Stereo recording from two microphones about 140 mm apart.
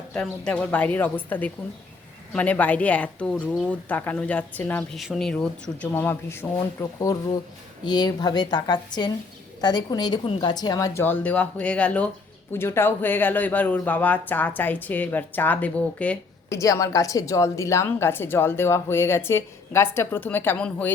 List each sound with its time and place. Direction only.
0.1 s a woman's voice: 10° left (ahead or behind)
16.5 s a woman's voice: 20° left (ahead or behind)